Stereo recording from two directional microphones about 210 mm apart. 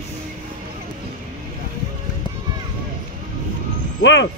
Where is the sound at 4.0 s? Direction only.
60° left (ahead or behind).